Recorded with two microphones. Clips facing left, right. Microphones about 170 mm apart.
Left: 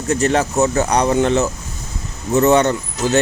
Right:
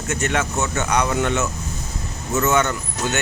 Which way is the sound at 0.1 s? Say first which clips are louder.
Left 6 dB; 35° left (ahead or behind).